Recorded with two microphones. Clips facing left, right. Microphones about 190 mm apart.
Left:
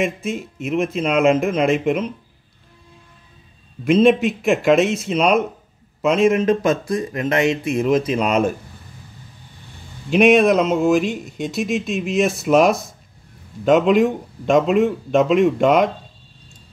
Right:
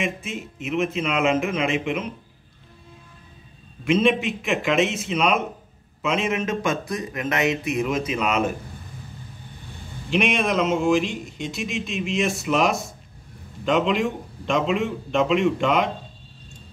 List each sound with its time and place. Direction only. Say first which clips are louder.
0.0 s speech: left 6 dB; 40° left (ahead or behind)
3.8 s speech: left 6 dB; 40° left (ahead or behind)
6.4 s speech: left 7 dB; 35° left (ahead or behind)
8.1 s speech: left 5 dB; 40° left (ahead or behind)
10.1 s speech: left 9 dB; 40° left (ahead or behind)